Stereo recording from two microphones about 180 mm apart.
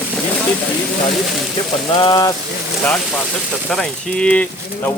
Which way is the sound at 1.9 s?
25° left (ahead or behind).